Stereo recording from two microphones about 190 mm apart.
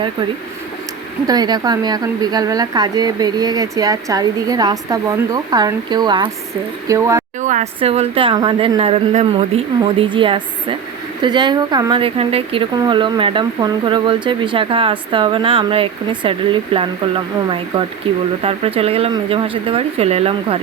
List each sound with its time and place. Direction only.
1.3 s speech: 20° right (ahead or behind)
7.4 s speech: 35° right (ahead or behind)